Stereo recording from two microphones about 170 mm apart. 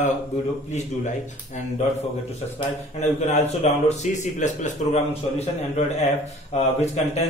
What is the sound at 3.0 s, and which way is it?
A man's voice, 40° left (ahead or behind).